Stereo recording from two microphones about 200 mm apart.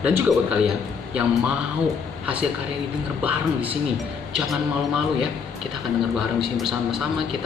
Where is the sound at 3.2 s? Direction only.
10° right (ahead or behind).